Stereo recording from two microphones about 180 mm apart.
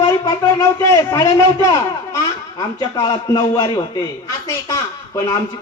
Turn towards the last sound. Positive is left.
turn(degrees=20)  # may be behind; listen again after turning